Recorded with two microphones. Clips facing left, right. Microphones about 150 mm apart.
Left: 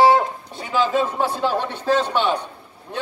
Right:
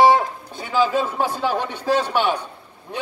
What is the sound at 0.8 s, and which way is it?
A man's voice, 10° right (ahead or behind).